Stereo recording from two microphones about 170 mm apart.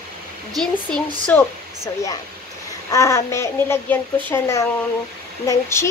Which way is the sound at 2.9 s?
15° left (ahead or behind).